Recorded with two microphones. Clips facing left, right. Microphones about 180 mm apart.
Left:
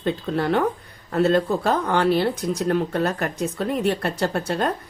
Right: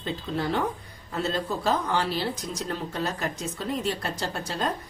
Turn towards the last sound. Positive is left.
turn(degrees=60)  # may be behind; listen again after turning